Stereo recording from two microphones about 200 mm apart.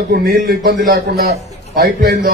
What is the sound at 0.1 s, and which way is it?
A man's voice, 50° right (ahead or behind).